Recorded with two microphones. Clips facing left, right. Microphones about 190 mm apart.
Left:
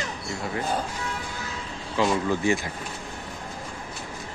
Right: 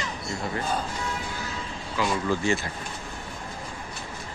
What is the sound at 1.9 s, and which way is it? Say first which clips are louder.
Speech: left 3 dB; 25° left (ahead or behind).